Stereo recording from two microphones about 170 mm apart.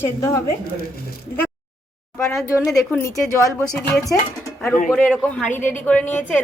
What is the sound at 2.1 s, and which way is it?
A woman's voice, 5° left (ahead or behind).